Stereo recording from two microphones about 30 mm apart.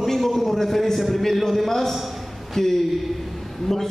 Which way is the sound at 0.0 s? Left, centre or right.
Centre.